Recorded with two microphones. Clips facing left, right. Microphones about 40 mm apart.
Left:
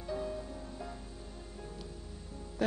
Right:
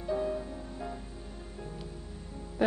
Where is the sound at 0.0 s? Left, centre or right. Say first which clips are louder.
Right 6 dB; centre.